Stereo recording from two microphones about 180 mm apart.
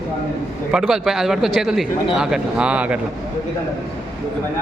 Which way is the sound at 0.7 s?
5° right (ahead or behind).